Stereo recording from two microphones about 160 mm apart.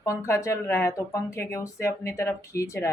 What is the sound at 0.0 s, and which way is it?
Speech, 20° left (ahead or behind).